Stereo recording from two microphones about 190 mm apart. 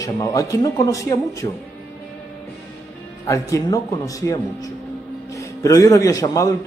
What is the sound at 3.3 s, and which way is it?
A man's voice, 15° left (ahead or behind).